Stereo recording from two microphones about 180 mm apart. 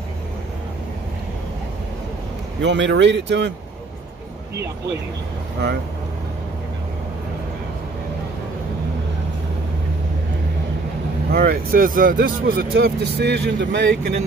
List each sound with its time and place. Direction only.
2.6 s speech: 85° right
11.3 s speech: 55° right (ahead or behind); by 14.1 s 70° right (ahead or behind)